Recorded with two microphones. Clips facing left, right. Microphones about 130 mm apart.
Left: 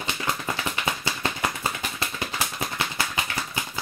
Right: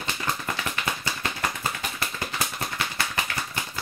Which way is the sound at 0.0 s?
25° left (ahead or behind).